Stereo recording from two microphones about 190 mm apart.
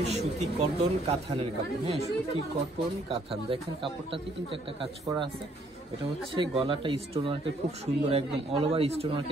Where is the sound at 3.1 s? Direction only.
30° right (ahead or behind).